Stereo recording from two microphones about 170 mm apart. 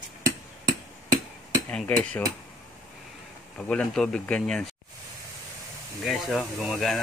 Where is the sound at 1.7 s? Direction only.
5° left (ahead or behind).